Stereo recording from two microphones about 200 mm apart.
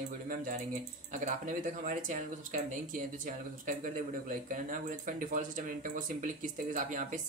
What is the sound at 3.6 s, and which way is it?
Speech, 40° right (ahead or behind).